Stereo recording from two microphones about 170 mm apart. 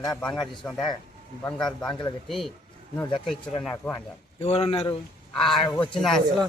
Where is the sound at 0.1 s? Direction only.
5° left (ahead or behind).